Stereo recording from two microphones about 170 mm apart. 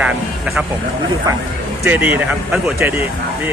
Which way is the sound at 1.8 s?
10° right (ahead or behind).